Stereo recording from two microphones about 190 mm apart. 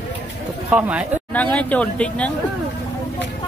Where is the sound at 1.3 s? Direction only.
5° left (ahead or behind).